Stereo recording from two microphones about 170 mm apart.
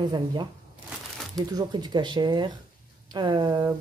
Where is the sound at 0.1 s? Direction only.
25° right (ahead or behind).